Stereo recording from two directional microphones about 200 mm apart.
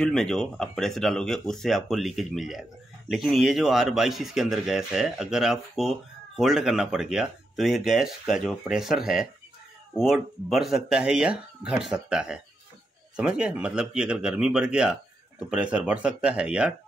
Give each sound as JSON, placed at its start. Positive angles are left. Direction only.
{"t": 0.0, "sound": "speech", "side_deg": 0}